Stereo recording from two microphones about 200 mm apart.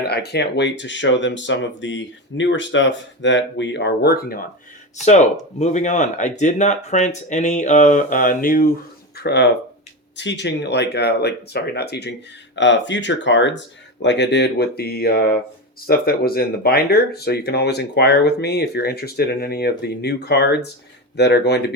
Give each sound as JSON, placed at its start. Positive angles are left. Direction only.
{"t": 0.1, "sound": "speech", "side_deg": 55}
{"t": 5.5, "sound": "speech", "side_deg": 35}
{"t": 9.1, "sound": "speech", "side_deg": 55}